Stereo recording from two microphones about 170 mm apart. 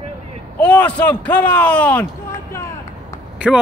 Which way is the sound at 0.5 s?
10° left (ahead or behind).